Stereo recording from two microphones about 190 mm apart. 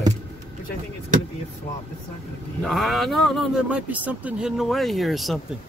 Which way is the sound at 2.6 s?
Centre (ahead or behind).